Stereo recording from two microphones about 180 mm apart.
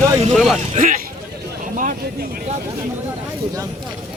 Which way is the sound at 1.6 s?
45° right (ahead or behind).